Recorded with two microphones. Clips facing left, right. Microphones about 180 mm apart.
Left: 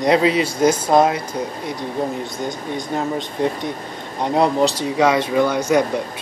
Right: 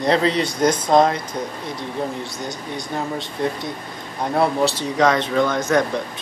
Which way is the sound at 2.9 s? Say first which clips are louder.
Left 3 dB; 15° left (ahead or behind).